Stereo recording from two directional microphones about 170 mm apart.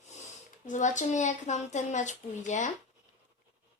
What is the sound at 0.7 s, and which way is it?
Speech, 45° left (ahead or behind).